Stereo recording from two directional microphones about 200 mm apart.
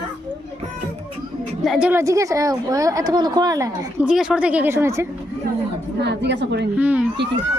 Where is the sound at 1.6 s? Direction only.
5° right (ahead or behind).